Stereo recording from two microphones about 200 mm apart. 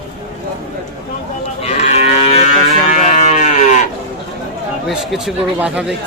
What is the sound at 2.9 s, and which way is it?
Sheep, 35° left (ahead or behind).